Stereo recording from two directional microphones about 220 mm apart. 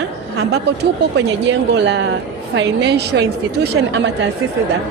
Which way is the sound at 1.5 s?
55° right (ahead or behind).